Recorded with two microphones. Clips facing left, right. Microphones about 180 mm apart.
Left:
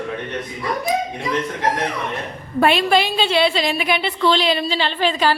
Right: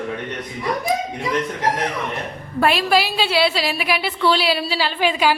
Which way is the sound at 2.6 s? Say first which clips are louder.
Left 1 dB; centre (ahead or behind).